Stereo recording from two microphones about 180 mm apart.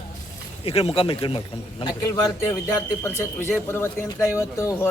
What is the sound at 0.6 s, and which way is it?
Speech, 35° left (ahead or behind).